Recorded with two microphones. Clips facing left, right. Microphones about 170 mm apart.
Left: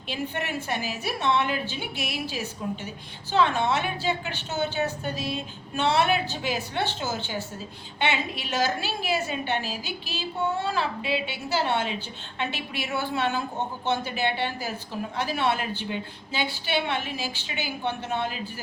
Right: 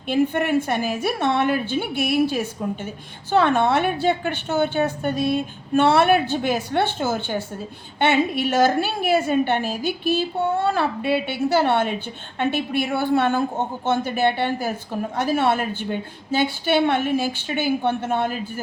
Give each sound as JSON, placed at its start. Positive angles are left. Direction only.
{"t": 0.1, "sound": "a woman's voice", "side_deg": -50}